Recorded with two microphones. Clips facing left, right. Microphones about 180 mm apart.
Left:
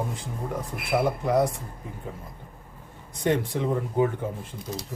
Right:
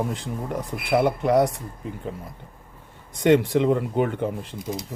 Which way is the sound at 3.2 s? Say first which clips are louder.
Right 7 dB; 80° right.